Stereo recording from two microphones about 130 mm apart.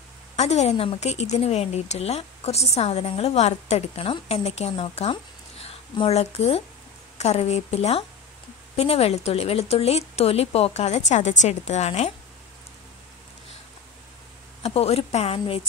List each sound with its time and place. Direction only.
0.4 s a woman's voice: 55° left (ahead or behind)
14.6 s a woman's voice: 50° left (ahead or behind)